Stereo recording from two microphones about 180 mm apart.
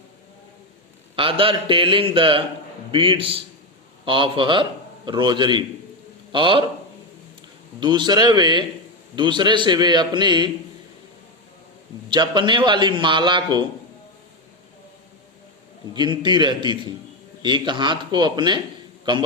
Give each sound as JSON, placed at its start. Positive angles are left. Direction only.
{"t": 1.1, "sound": "a man's voice", "side_deg": -30}
{"t": 7.8, "sound": "a man's voice", "side_deg": -25}
{"t": 12.0, "sound": "a man's voice", "side_deg": -25}
{"t": 15.9, "sound": "a man's voice", "side_deg": -25}